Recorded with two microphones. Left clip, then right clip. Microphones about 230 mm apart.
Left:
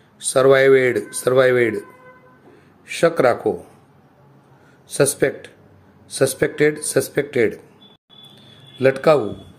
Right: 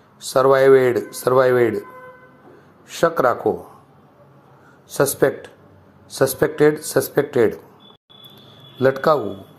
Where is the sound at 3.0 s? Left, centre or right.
Left.